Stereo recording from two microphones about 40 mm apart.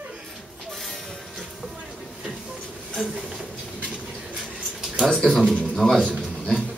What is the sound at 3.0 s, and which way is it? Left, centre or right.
Speech, left.